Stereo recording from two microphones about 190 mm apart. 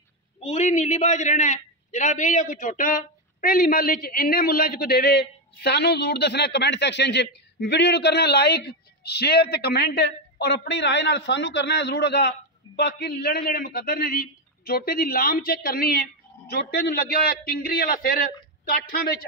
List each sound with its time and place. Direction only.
0.4 s a man's voice: 35° left (ahead or behind)